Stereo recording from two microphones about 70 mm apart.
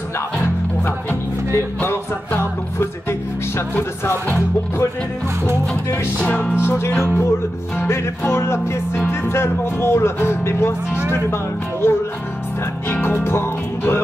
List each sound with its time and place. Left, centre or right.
1.8 s music: left
6.2 s music: centre
6.6 s music: left